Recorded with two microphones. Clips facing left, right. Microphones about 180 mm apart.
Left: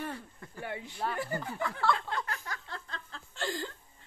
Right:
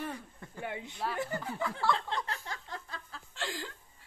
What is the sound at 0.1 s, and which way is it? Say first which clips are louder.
Speech: left 1 dB; 20° right (ahead or behind).